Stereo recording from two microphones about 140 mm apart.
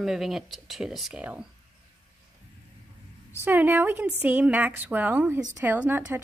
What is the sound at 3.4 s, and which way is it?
Speech, 15° right (ahead or behind).